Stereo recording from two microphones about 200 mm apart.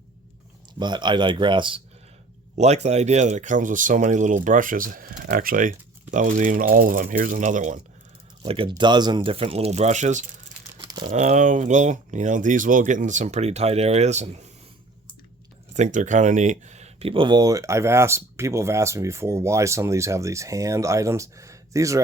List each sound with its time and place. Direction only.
0.8 s speech: 20° right (ahead or behind); by 7.8 s 40° right (ahead or behind)
8.4 s speech: 25° right (ahead or behind)
10.8 s crumpling: 20° right (ahead or behind)
11.1 s speech: 35° right (ahead or behind)
15.7 s speech: 40° right (ahead or behind); by 22.0 s 15° right (ahead or behind)